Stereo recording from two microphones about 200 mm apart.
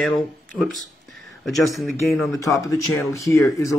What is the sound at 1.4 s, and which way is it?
Speech, centre (ahead or behind).